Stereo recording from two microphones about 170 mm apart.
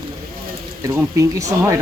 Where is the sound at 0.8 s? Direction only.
15° right (ahead or behind).